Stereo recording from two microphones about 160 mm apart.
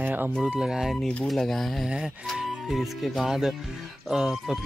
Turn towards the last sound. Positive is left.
turn(degrees=0)  # may be behind; listen again after turning